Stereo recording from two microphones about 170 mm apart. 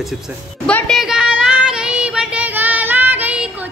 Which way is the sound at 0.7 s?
5° left (ahead or behind).